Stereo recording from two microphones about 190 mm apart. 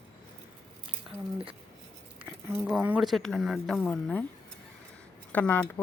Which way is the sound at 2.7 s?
5° right (ahead or behind).